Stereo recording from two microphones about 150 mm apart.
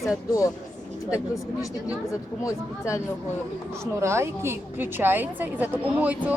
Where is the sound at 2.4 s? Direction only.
20° left (ahead or behind).